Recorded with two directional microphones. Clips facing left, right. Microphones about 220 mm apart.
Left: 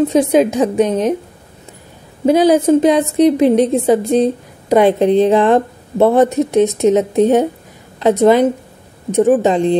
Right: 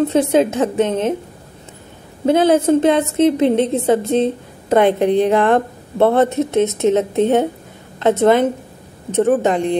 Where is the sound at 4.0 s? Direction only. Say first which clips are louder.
Left 3 dB; 15° left (ahead or behind).